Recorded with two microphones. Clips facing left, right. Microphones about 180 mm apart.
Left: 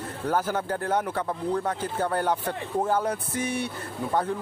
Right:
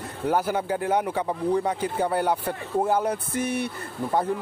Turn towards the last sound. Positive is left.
turn(degrees=-10)  # may be behind; listen again after turning